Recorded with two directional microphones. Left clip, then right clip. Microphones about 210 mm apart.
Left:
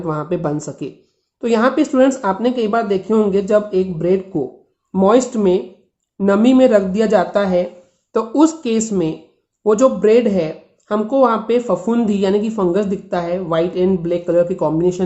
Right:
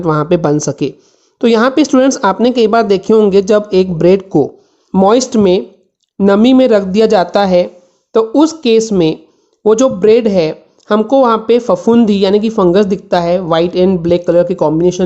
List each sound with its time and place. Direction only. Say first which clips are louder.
0.0 s speech: right 9 dB; 40° right (ahead or behind)
8.1 s speech: right 5 dB; 30° right (ahead or behind)